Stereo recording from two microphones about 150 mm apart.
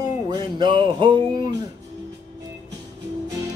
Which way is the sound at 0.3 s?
30° right (ahead or behind).